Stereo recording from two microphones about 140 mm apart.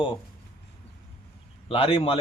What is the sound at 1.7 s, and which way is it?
Speech, 45° left (ahead or behind).